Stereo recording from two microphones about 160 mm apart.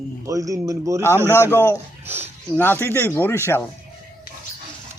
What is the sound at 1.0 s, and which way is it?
Speech, 15° left (ahead or behind).